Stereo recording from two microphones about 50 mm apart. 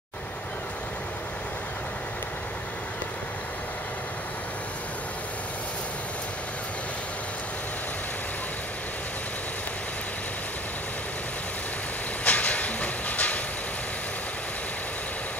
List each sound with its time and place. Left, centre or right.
12.3 s train: left